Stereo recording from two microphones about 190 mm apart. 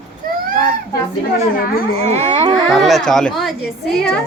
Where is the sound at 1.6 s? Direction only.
50° left (ahead or behind).